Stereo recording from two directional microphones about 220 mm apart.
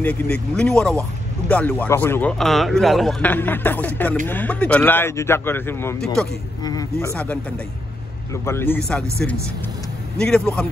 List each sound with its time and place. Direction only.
0.0 s a man's voice: 5° left (ahead or behind)
8.3 s a man's voice: 10° left (ahead or behind)